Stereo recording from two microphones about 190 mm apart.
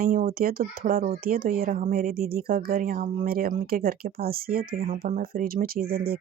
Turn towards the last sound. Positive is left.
turn(degrees=-50)  # may be behind; listen again after turning